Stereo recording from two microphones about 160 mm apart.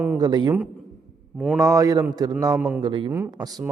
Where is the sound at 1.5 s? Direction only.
20° right (ahead or behind).